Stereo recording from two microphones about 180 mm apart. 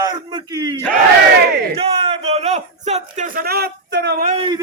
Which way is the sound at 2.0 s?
35° right (ahead or behind).